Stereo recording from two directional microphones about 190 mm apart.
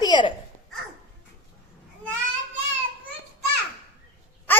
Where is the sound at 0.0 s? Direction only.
25° left (ahead or behind).